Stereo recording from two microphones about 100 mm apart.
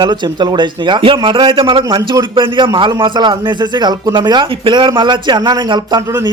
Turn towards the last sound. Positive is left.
turn(degrees=-45)  # may be behind; listen again after turning